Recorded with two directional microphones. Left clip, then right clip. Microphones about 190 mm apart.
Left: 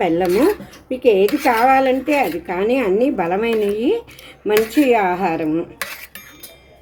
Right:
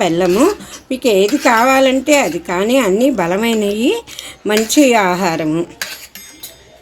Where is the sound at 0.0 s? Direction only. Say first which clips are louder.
Right 3 dB; 45° right (ahead or behind).